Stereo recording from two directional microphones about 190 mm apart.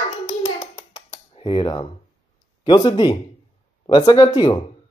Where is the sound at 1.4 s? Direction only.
25° left (ahead or behind).